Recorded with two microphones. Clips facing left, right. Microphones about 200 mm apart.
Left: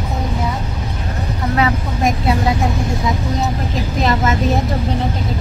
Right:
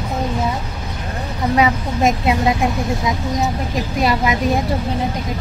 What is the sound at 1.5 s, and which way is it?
Speech, 15° right (ahead or behind).